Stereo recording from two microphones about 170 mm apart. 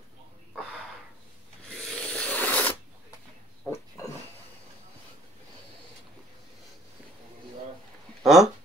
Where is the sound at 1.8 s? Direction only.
5° left (ahead or behind).